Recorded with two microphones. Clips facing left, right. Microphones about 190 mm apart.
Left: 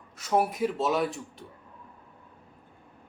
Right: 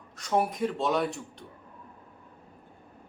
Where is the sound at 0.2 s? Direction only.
5° left (ahead or behind).